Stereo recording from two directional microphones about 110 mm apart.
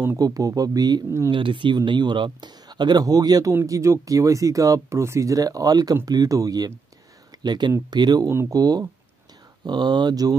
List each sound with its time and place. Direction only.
0.0 s speech: 30° right (ahead or behind)
1.3 s speech: 50° right (ahead or behind)
8.3 s speech: 25° right (ahead or behind)
8.5 s speech: 35° right (ahead or behind)